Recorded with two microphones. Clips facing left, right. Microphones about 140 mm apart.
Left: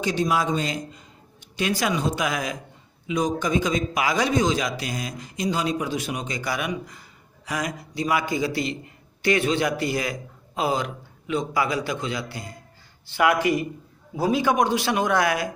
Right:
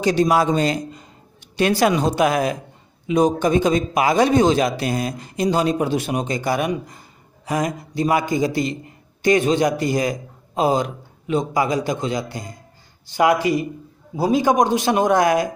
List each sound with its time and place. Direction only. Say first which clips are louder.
0.0 s a man's voice: right 6 dB; 75° right (ahead or behind); by 15.5 s 40° right (ahead or behind)